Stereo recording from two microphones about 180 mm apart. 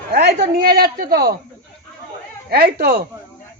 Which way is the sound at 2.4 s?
60° right (ahead or behind).